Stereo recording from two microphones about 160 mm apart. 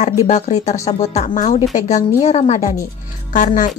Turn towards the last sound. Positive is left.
turn(degrees=50)  # may be behind; listen again after turning